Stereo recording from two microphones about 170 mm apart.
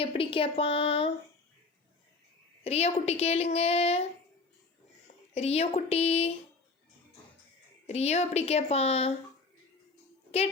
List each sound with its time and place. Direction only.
0.0 s a child's voice: 35° left (ahead or behind)
2.6 s a child's voice: 40° left (ahead or behind)
7.9 s a child's voice: 40° left (ahead or behind)